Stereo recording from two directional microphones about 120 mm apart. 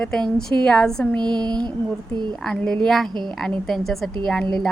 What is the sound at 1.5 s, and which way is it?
Speech, 35° right (ahead or behind).